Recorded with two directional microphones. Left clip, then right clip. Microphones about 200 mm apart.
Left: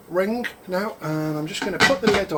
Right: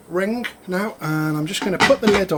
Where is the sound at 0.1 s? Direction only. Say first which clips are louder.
Even; 20° right (ahead or behind).